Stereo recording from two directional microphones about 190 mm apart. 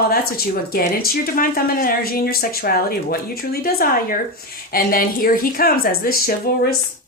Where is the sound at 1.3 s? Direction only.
50° left (ahead or behind).